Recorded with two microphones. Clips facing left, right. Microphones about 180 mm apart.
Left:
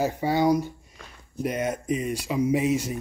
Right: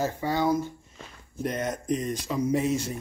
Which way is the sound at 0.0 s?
15° left (ahead or behind).